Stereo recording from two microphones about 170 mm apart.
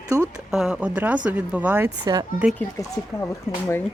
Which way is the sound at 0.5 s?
5° right (ahead or behind).